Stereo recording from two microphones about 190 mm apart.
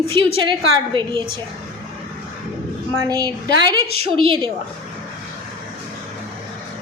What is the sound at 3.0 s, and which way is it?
A woman's voice, 20° right (ahead or behind).